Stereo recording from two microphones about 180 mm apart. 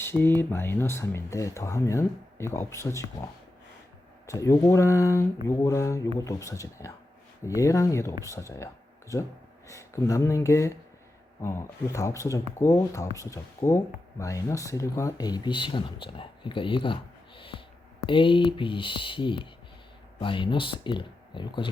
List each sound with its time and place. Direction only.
0.0 s speech: 10° left (ahead or behind)
4.3 s speech: 15° left (ahead or behind)